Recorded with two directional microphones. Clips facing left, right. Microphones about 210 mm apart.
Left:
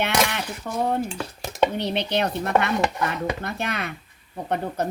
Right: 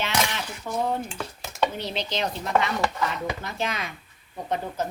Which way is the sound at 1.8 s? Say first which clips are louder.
Left 5 dB; 60° left (ahead or behind).